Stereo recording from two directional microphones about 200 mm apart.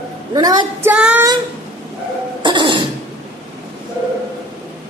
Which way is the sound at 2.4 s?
25° right (ahead or behind).